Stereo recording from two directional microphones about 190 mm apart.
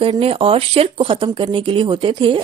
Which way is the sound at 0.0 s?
30° right (ahead or behind).